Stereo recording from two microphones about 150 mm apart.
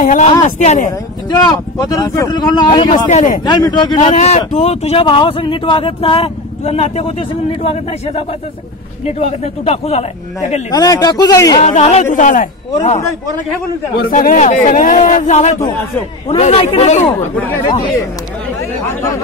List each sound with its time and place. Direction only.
0.0 s a sound: 60° left (ahead or behind)
0.6 s a man's voice: 55° left (ahead or behind)
1.3 s speech: 25° left (ahead or behind)
2.9 s a man's voice: 55° left (ahead or behind)
3.4 s speech: 30° left (ahead or behind)
4.0 s speech: 45° left (ahead or behind)
5.0 s speech: 35° left (ahead or behind)
10.7 s speech: 25° left (ahead or behind)
11.6 s speech: 50° left (ahead or behind)
14.0 s a man's voice: 60° left (ahead or behind)